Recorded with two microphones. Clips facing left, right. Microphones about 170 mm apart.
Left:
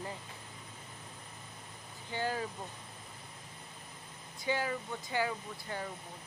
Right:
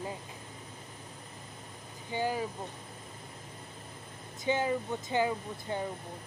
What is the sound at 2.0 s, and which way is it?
Speech, 15° right (ahead or behind).